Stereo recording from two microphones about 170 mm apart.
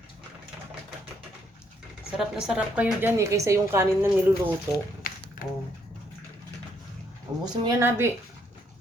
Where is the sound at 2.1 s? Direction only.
5° right (ahead or behind).